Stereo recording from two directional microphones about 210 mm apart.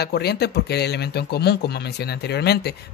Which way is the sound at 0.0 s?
50° left (ahead or behind).